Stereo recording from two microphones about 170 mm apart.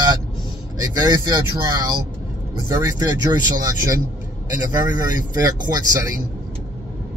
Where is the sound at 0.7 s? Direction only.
25° right (ahead or behind).